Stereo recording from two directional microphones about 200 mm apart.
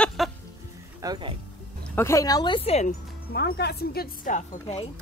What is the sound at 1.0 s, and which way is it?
Speech, 20° right (ahead or behind).